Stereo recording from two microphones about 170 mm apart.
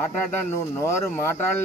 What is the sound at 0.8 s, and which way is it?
Speech, 15° left (ahead or behind).